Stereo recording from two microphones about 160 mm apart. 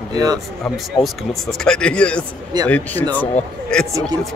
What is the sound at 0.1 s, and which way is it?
Speech, 25° right (ahead or behind).